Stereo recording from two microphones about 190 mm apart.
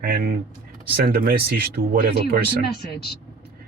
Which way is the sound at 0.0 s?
50° right (ahead or behind).